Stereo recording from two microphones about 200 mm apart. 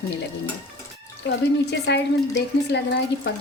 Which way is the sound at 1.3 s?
60° left (ahead or behind).